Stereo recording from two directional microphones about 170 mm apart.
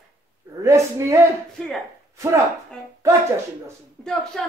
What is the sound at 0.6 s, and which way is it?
Speech, 20° right (ahead or behind).